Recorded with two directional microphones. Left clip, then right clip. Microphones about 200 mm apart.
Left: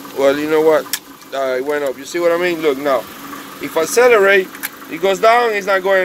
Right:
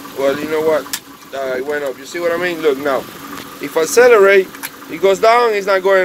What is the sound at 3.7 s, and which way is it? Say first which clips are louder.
Speech: right 2 dB; 5° right (ahead or behind).